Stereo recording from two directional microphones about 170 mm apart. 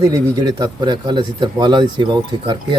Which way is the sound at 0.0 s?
20° right (ahead or behind).